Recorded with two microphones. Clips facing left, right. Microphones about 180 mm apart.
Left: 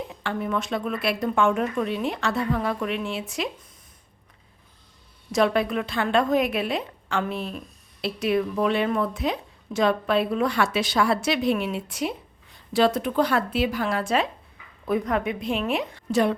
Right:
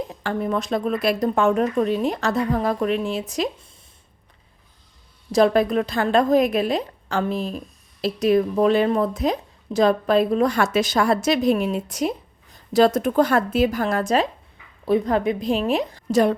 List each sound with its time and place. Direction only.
0.1 s speech: 40° right (ahead or behind)
5.3 s speech: 35° right (ahead or behind)
14.8 s speech: 30° right (ahead or behind)